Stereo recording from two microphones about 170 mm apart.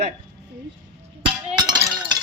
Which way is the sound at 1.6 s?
25° right (ahead or behind).